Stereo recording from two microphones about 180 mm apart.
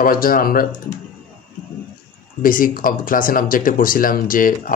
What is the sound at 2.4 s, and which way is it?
Speech, 50° left (ahead or behind).